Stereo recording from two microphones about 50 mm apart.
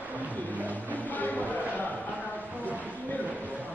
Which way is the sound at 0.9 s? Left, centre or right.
Left.